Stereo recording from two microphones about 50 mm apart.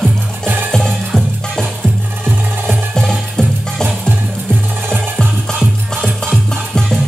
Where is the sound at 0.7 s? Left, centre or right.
Centre.